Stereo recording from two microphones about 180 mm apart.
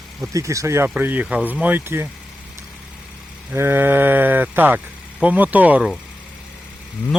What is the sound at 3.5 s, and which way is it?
Speech, 15° right (ahead or behind).